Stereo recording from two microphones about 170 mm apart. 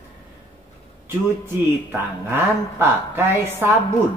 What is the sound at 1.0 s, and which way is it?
A woman's voice, 15° right (ahead or behind).